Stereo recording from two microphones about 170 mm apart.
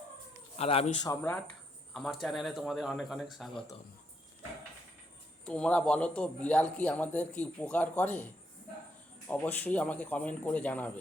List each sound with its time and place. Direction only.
0.5 s speech: 35° left (ahead or behind)
1.0 s a man's voice: 15° left (ahead or behind)
1.9 s speech: centre (ahead or behind)
5.5 s a man's voice: 5° left (ahead or behind)
9.3 s a man's voice: 10° left (ahead or behind)